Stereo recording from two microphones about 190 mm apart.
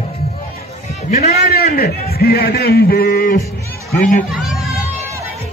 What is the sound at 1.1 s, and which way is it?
Speech, 35° left (ahead or behind).